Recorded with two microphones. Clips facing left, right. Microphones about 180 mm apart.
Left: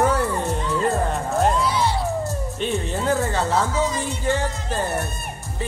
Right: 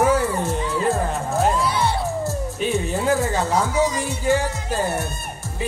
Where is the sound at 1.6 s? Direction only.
55° right (ahead or behind).